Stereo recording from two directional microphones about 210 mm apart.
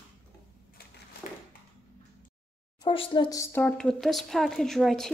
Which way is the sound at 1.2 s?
35° left (ahead or behind).